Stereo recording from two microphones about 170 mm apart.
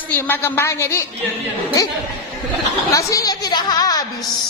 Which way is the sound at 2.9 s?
20° left (ahead or behind).